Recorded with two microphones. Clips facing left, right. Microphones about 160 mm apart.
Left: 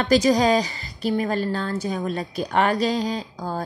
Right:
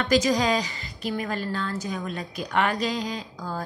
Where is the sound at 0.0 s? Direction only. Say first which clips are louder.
Left 4 dB; 35° left (ahead or behind).